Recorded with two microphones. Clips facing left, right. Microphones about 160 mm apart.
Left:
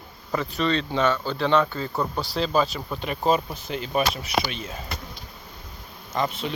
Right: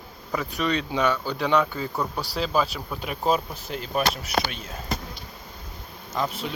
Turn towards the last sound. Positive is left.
turn(degrees=-5)  # may be behind; listen again after turning